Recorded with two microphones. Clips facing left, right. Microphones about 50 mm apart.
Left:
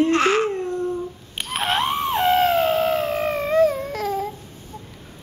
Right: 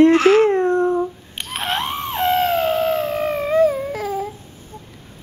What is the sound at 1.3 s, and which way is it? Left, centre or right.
Dog, centre.